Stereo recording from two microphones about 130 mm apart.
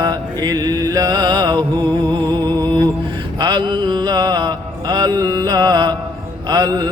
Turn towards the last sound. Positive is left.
turn(degrees=-30)  # may be behind; listen again after turning